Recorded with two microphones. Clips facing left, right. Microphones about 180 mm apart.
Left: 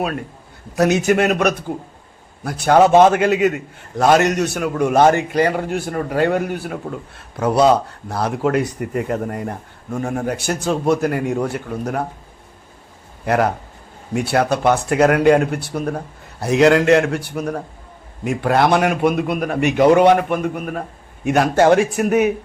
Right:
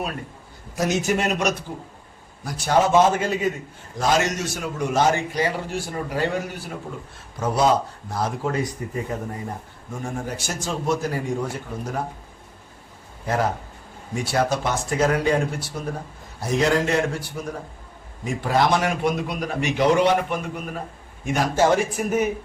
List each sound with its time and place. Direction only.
0.8 s a man's voice: 65° left (ahead or behind)
13.2 s a man's voice: 70° left (ahead or behind)